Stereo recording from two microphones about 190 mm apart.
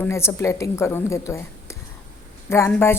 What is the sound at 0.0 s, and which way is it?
A woman's voice, 15° left (ahead or behind).